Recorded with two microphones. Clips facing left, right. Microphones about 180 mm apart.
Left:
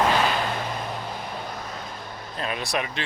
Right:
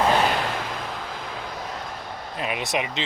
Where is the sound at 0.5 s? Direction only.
90° right.